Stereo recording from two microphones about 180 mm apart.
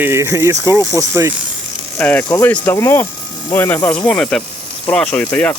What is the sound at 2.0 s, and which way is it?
Speech, 10° left (ahead or behind).